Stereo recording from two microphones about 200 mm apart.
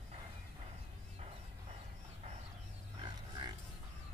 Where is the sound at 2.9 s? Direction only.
20° right (ahead or behind).